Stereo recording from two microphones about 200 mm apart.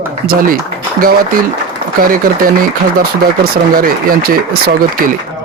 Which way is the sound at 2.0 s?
45° right (ahead or behind).